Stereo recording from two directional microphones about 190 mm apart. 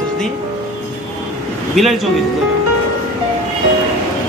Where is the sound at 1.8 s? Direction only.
Centre (ahead or behind).